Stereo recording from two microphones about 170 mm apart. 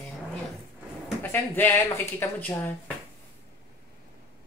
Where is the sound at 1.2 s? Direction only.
10° left (ahead or behind).